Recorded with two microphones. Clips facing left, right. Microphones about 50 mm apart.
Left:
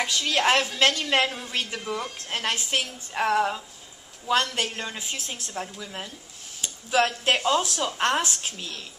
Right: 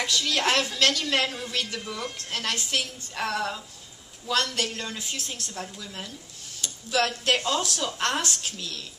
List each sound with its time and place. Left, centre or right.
0.0 s a woman's voice: left